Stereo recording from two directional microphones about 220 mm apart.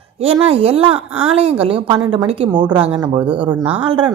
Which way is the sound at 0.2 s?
25° right (ahead or behind).